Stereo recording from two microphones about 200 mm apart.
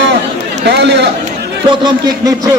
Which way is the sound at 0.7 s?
60° right (ahead or behind).